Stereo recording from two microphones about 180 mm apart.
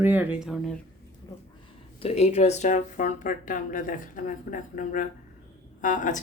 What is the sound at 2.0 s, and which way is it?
Speech, 35° left (ahead or behind).